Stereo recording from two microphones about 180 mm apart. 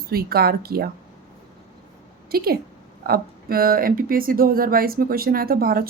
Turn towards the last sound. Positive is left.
turn(degrees=-55)  # may be behind; listen again after turning